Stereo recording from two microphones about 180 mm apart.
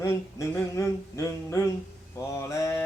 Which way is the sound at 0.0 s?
15° left (ahead or behind).